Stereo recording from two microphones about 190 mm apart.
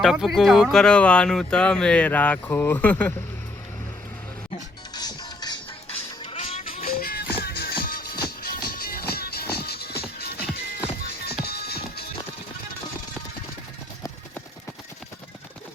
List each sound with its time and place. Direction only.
0.0 s speech: centre (ahead or behind)
4.9 s music: 20° left (ahead or behind)
6.3 s music: 30° left (ahead or behind)
6.7 s music: 50° left (ahead or behind)